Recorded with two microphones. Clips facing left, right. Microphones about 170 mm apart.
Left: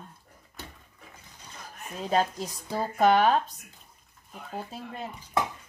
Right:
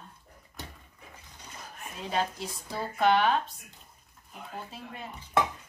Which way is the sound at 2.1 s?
40° left (ahead or behind).